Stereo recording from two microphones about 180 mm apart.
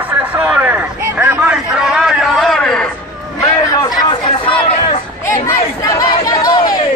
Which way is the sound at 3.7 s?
20° left (ahead or behind).